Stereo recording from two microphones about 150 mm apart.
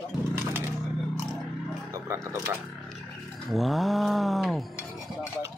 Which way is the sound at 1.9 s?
20° right (ahead or behind).